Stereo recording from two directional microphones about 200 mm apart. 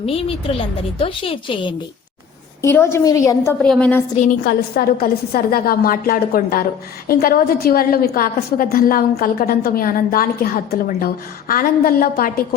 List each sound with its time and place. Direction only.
0.0 s a woman's voice: 30° left (ahead or behind)
2.6 s a woman's voice: 10° left (ahead or behind)
4.4 s a woman's voice: 50° left (ahead or behind)